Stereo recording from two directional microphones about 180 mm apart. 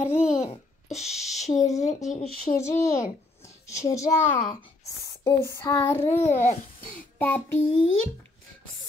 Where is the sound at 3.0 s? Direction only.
15° left (ahead or behind).